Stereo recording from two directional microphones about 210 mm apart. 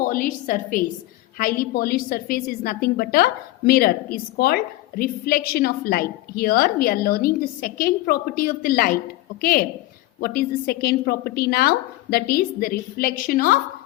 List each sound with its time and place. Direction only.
0.0 s a woman's voice: 40° left (ahead or behind)